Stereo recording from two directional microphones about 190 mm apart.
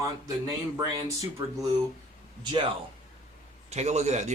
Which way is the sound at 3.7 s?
35° right (ahead or behind).